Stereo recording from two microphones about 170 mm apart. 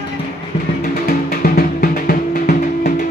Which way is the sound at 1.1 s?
60° left (ahead or behind).